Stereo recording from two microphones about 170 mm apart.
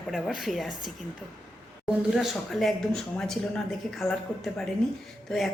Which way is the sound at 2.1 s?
Centre (ahead or behind).